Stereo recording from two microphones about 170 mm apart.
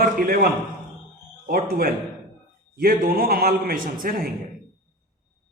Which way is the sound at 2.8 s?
60° right (ahead or behind).